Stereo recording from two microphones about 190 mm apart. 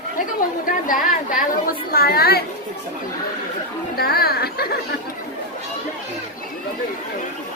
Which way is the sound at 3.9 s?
55° left (ahead or behind).